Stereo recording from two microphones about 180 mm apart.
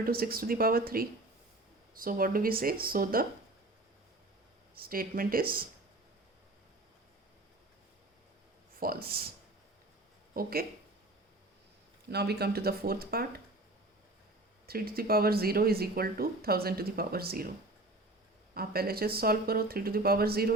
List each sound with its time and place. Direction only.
0.0 s speech: 55° right (ahead or behind)
4.8 s speech: 55° right (ahead or behind)
8.8 s speech: 55° right (ahead or behind)
10.3 s speech: 55° right (ahead or behind)
12.1 s speech: 65° right (ahead or behind)
14.7 s speech: 55° right (ahead or behind)
18.5 s speech: 55° right (ahead or behind)